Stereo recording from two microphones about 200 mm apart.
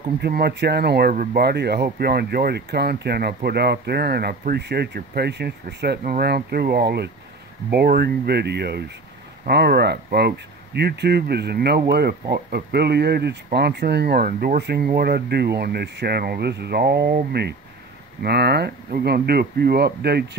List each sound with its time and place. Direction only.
0.2 s speech: 55° right (ahead or behind)